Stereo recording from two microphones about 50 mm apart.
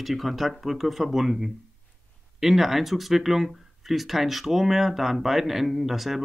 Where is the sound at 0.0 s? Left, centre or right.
Centre.